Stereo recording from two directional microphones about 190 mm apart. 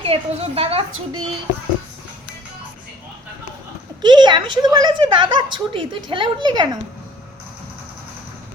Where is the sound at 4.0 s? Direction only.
25° right (ahead or behind).